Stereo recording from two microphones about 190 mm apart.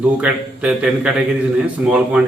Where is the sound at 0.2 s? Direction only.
5° right (ahead or behind).